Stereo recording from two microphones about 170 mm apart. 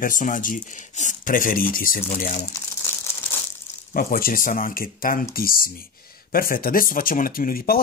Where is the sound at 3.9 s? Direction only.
55° left (ahead or behind).